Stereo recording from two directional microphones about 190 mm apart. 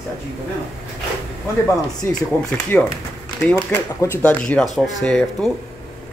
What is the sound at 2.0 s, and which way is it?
Speech, 15° left (ahead or behind).